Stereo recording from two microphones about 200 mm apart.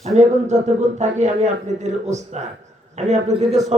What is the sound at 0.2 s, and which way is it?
A man's voice, 35° right (ahead or behind).